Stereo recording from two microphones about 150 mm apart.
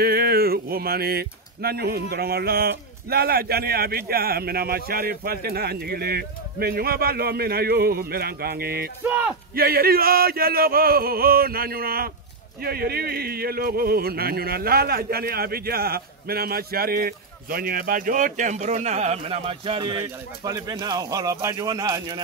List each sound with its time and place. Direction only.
0.0 s speech: 90° right
9.0 s speech: 10° right (ahead or behind)
9.6 s speech: 90° right; by 22.2 s 30° right (ahead or behind)